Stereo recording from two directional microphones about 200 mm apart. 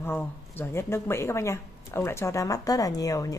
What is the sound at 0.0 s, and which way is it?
Speech, 10° left (ahead or behind).